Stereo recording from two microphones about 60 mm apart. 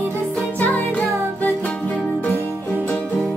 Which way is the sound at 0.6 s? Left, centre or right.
Left.